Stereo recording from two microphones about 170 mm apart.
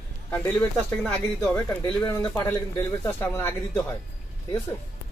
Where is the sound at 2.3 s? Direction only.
20° left (ahead or behind).